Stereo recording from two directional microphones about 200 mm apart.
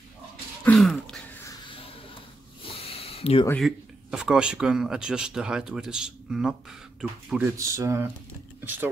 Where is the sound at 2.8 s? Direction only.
30° left (ahead or behind).